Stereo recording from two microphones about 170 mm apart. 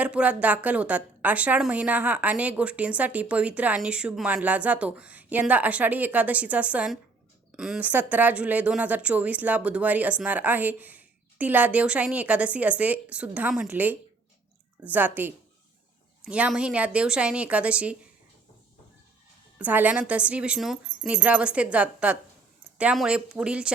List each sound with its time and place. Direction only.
0.0 s a woman's voice: 10° right (ahead or behind)
19.5 s a woman's voice: 10° right (ahead or behind)